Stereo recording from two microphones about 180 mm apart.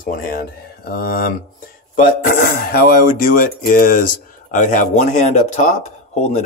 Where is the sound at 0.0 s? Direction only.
50° left (ahead or behind).